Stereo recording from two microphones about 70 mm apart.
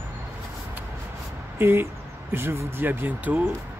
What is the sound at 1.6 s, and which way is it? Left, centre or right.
Speech, right.